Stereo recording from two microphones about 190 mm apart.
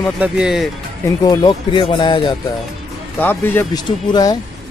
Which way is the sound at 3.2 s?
10° left (ahead or behind).